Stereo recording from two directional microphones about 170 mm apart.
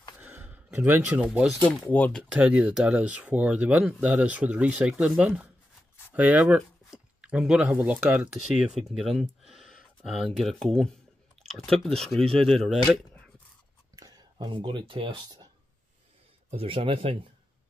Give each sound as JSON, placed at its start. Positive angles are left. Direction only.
{"t": 0.2, "sound": "speech", "side_deg": -10}
{"t": 1.9, "sound": "speech", "side_deg": 10}
{"t": 2.4, "sound": "speech", "side_deg": -5}
{"t": 9.5, "sound": "a sound", "side_deg": 0}
{"t": 10.0, "sound": "speech", "side_deg": 0}
{"t": 13.9, "sound": "speech", "side_deg": -20}
{"t": 16.4, "sound": "speech", "side_deg": -30}